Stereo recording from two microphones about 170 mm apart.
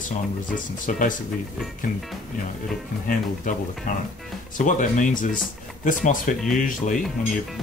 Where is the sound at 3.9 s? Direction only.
50° left (ahead or behind).